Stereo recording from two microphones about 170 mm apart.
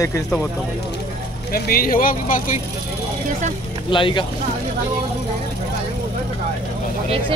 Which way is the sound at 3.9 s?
30° left (ahead or behind).